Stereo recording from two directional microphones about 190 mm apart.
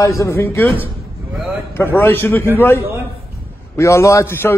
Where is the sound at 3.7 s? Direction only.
15° left (ahead or behind).